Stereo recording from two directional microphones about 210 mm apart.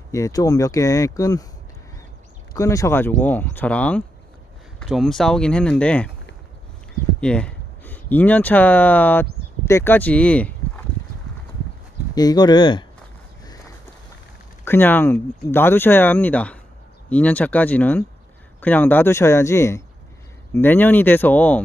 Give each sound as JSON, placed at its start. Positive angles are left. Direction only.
{"t": 0.1, "sound": "speech", "side_deg": 15}
{"t": 2.5, "sound": "speech", "side_deg": 15}
{"t": 7.2, "sound": "speech", "side_deg": 5}
{"t": 12.2, "sound": "speech", "side_deg": 20}
{"t": 14.6, "sound": "speech", "side_deg": 10}